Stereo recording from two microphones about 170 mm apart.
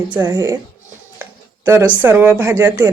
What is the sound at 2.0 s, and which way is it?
Speech, 10° right (ahead or behind).